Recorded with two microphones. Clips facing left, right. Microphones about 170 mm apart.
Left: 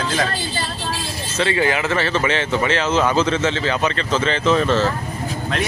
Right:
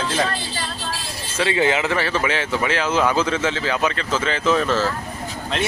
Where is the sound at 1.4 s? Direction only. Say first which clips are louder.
Even; 15° right (ahead or behind).